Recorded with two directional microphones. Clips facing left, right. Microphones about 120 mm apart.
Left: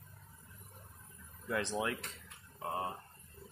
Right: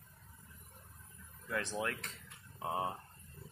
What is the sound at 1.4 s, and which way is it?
Speech, 20° left (ahead or behind).